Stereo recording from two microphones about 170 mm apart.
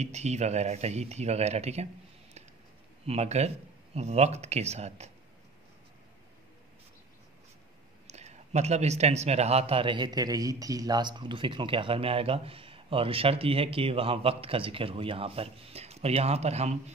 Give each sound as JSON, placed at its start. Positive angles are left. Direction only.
{"t": 0.0, "sound": "a man's voice", "side_deg": -40}
{"t": 3.1, "sound": "a man's voice", "side_deg": -40}
{"t": 8.1, "sound": "a man's voice", "side_deg": -40}